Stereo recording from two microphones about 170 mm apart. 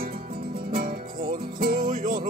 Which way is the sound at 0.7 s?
55° right (ahead or behind).